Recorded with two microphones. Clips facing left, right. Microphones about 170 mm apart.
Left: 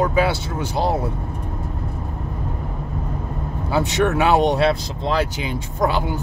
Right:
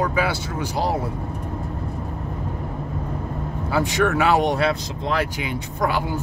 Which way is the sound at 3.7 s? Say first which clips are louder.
Left 1 dB; 20° left (ahead or behind).